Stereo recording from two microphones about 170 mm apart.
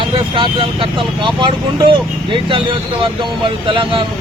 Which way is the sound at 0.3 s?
30° right (ahead or behind).